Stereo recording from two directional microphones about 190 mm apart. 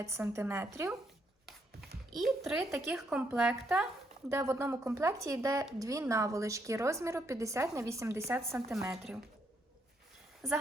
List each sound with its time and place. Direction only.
0.0 s a woman's voice: 15° right (ahead or behind)
2.0 s a woman's voice: centre (ahead or behind)